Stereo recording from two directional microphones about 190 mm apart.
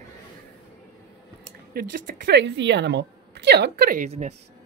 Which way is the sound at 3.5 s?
55° right (ahead or behind).